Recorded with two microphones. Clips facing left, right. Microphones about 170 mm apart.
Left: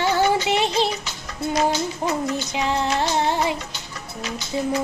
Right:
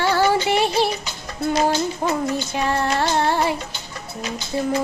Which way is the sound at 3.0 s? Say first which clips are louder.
Right 2 dB; 15° left (ahead or behind).